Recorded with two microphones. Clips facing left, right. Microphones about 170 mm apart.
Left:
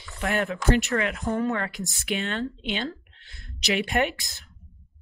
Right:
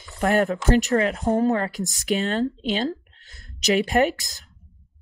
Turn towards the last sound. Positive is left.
turn(degrees=-40)  # may be behind; listen again after turning